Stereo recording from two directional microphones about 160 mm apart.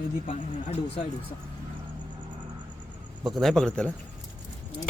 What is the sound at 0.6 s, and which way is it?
Speech, 40° left (ahead or behind).